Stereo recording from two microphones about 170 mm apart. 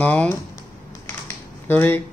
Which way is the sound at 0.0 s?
10° left (ahead or behind).